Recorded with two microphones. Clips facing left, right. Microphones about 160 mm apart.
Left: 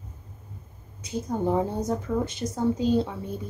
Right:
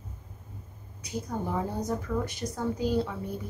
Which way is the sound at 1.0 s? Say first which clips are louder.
Left 6 dB; 25° left (ahead or behind).